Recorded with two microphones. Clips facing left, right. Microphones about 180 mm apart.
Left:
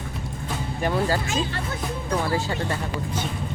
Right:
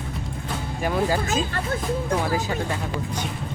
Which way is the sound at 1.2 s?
40° right (ahead or behind).